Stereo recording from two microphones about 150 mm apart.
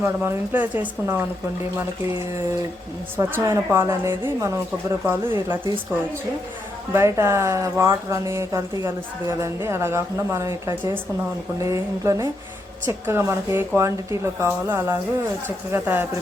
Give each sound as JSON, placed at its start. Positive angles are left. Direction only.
{"t": 0.0, "sound": "speech", "side_deg": -15}
{"t": 3.2, "sound": "speech", "side_deg": -20}
{"t": 6.9, "sound": "speech", "side_deg": -20}